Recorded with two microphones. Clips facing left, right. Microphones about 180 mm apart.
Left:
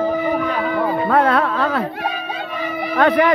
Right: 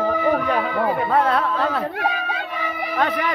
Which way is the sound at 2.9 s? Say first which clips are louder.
Left 8 dB; 65° left (ahead or behind).